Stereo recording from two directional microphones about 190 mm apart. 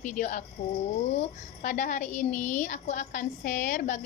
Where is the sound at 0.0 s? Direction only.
40° left (ahead or behind).